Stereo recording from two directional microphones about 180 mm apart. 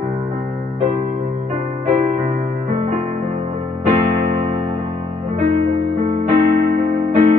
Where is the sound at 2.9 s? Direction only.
40° right (ahead or behind).